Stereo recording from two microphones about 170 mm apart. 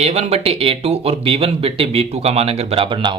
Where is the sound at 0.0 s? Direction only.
40° right (ahead or behind).